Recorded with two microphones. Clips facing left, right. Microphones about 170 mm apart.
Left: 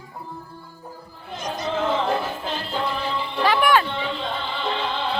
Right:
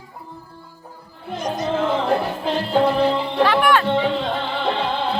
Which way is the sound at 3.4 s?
Centre (ahead or behind).